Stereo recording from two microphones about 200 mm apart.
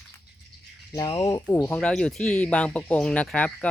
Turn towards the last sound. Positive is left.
turn(degrees=5)  # may be behind; listen again after turning